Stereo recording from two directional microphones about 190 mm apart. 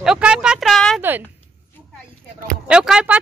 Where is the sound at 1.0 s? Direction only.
10° right (ahead or behind).